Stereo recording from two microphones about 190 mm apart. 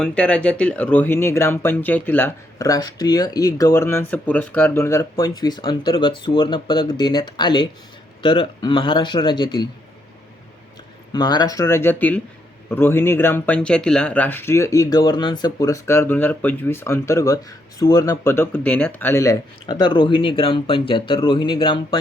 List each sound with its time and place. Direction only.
0.0 s a man's voice: 5° left (ahead or behind); by 9.6 s 25° left (ahead or behind)
11.1 s a man's voice: 20° left (ahead or behind)